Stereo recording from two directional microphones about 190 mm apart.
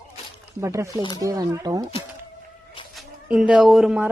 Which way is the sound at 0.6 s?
15° right (ahead or behind).